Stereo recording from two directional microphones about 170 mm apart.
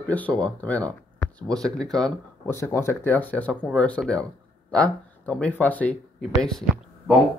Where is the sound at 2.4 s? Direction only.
15° left (ahead or behind).